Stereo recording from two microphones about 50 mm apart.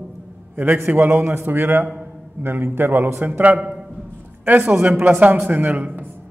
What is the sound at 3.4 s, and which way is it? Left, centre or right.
Speech, right.